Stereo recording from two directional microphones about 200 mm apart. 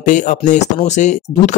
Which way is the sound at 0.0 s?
40° left (ahead or behind).